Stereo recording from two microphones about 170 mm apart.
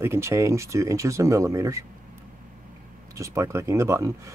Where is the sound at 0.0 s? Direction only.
15° right (ahead or behind).